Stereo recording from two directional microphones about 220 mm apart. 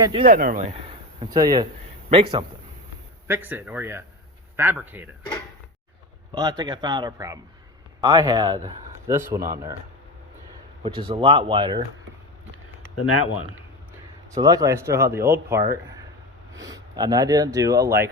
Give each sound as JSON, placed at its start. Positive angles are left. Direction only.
{"t": 0.0, "sound": "a man's voice", "side_deg": -25}
{"t": 0.3, "sound": "a man's voice", "side_deg": -40}
{"t": 3.2, "sound": "speech", "side_deg": -10}
{"t": 6.3, "sound": "a man's voice", "side_deg": -20}
{"t": 10.8, "sound": "a man's voice", "side_deg": -25}
{"t": 13.0, "sound": "speech", "side_deg": 85}
{"t": 14.3, "sound": "speech", "side_deg": -15}